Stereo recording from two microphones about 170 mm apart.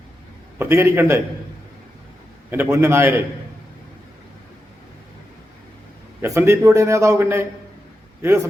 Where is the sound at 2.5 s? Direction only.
15° right (ahead or behind).